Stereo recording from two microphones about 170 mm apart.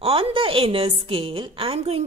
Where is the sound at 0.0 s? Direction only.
35° right (ahead or behind).